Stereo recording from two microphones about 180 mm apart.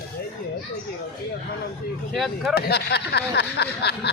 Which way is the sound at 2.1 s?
Centre (ahead or behind).